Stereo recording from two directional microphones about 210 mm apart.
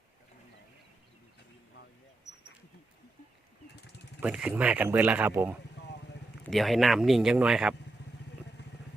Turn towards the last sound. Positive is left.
turn(degrees=-5)  # may be behind; listen again after turning